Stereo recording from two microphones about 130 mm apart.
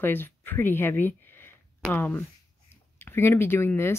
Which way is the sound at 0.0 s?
15° left (ahead or behind).